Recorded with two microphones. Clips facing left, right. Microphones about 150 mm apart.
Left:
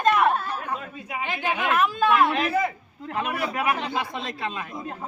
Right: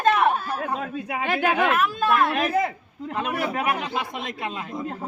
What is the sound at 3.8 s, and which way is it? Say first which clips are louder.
Speech: even; 15° right (ahead or behind).